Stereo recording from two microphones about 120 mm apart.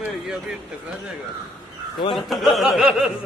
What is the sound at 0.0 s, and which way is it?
Speech, 5° right (ahead or behind).